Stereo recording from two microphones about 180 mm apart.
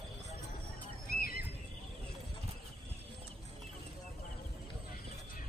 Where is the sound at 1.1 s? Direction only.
55° left (ahead or behind).